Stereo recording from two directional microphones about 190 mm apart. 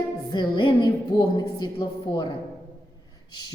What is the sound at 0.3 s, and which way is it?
A man's voice, 25° left (ahead or behind).